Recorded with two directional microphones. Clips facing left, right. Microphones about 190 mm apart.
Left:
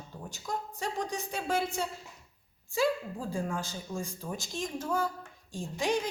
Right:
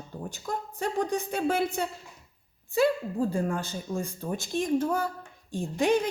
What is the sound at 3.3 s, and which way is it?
Speech, 60° right (ahead or behind).